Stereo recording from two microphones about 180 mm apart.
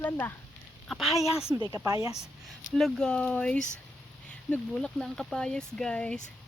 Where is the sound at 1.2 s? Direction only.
15° left (ahead or behind).